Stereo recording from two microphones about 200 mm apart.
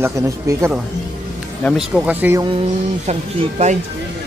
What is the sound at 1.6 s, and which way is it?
Speech, centre (ahead or behind).